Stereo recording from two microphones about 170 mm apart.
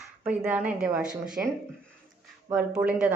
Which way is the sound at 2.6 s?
10° right (ahead or behind).